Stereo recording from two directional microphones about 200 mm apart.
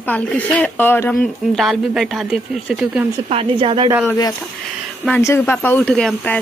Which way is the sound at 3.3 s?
30° right (ahead or behind).